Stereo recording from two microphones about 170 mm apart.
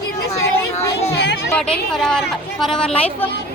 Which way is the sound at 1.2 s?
80° left.